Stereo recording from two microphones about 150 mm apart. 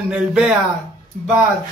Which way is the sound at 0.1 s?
5° right (ahead or behind).